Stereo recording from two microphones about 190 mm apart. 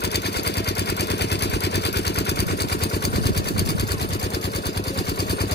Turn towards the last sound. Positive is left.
turn(degrees=60)  # may be behind; listen again after turning